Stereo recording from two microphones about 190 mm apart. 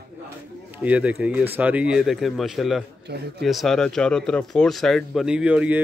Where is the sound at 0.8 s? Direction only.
5° right (ahead or behind).